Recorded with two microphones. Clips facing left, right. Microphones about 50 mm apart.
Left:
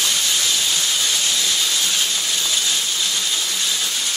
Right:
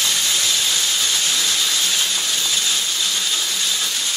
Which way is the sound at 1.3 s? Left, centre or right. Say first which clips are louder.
Even; right.